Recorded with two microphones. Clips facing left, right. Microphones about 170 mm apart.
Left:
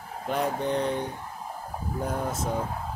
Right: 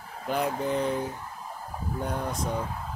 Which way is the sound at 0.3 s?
Centre (ahead or behind).